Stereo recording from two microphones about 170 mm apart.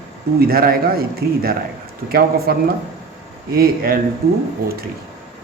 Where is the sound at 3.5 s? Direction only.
60° right (ahead or behind).